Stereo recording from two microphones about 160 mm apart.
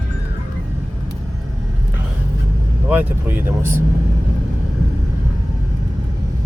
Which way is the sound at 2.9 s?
10° right (ahead or behind).